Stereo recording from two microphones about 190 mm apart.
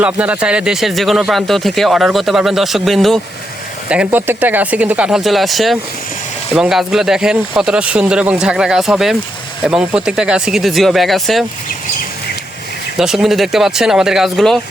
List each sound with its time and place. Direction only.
0.0 s speech: 5° right (ahead or behind)
13.0 s speech: centre (ahead or behind)